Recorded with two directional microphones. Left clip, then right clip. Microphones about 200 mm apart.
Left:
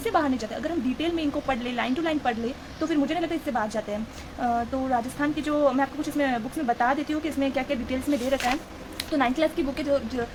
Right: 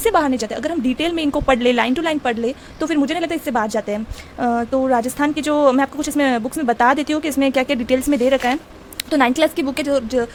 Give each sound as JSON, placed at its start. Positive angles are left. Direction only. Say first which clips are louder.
{"t": 0.0, "sound": "a woman's voice", "louder": "right 8 dB", "side_deg": -45}